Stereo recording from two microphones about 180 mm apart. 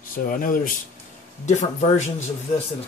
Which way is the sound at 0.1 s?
50° left (ahead or behind).